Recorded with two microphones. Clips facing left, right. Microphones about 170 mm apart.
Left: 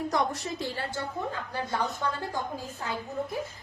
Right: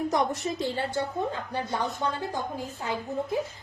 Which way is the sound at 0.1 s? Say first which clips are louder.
Right 2 dB; 20° right (ahead or behind).